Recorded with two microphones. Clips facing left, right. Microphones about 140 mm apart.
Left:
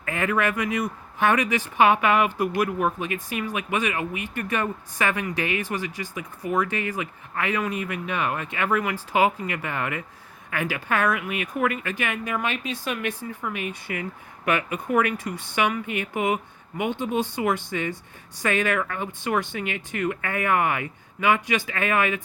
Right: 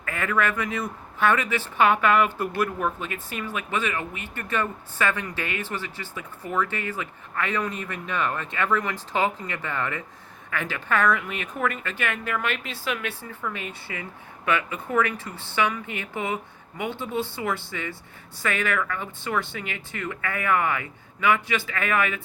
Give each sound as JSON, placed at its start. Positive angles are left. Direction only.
{"t": 0.0, "sound": "speech", "side_deg": 15}